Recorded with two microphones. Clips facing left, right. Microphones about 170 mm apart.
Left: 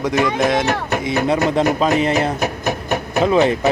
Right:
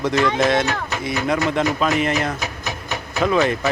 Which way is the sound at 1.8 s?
30° left (ahead or behind).